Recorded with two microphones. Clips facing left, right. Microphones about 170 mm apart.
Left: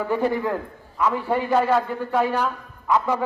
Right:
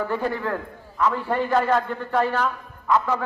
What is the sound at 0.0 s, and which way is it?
A man's voice, 15° left (ahead or behind).